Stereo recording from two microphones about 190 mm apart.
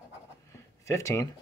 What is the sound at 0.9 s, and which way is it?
Speech, 15° left (ahead or behind).